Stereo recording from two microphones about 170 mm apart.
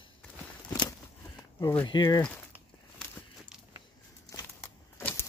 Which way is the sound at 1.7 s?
25° left (ahead or behind).